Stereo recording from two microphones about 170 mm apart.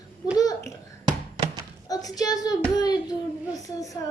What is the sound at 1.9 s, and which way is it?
A woman's voice, 20° left (ahead or behind).